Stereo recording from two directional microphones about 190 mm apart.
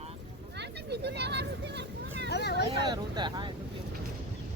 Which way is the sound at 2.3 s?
60° left (ahead or behind).